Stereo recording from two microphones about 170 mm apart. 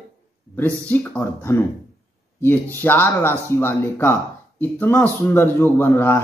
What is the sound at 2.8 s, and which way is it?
A man's voice, 10° left (ahead or behind).